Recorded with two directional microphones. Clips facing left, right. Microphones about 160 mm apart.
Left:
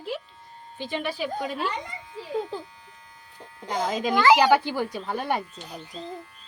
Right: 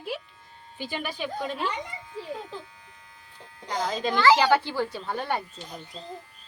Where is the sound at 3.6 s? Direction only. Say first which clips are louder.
Left 2 dB; 20° left (ahead or behind).